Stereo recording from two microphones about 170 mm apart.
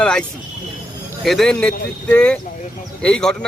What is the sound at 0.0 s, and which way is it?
Speech, 5° left (ahead or behind).